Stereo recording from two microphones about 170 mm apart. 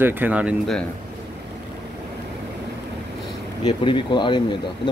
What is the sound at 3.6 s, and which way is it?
Speech, 30° left (ahead or behind).